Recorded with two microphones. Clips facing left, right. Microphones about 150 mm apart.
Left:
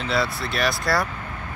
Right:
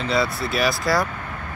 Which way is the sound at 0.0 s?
Centre (ahead or behind).